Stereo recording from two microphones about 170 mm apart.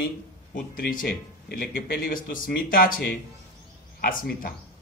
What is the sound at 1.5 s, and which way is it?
Speech, 65° left (ahead or behind).